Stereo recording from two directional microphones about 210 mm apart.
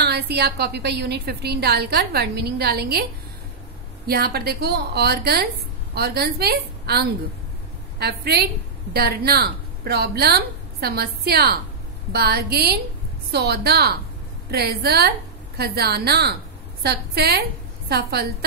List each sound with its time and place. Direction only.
0.0 s a woman's voice: 50° right (ahead or behind)
4.1 s a woman's voice: 50° right (ahead or behind)